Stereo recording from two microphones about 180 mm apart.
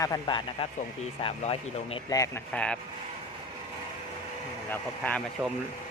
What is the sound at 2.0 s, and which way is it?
Speech, 20° left (ahead or behind).